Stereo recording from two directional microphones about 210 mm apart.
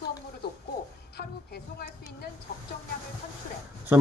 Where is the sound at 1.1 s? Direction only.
50° left (ahead or behind).